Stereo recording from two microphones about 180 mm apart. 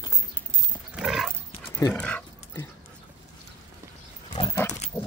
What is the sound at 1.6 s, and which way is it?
Dog, 15° left (ahead or behind).